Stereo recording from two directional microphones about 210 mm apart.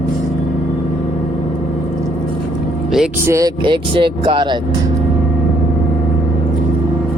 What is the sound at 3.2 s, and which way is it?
Speech, 15° right (ahead or behind).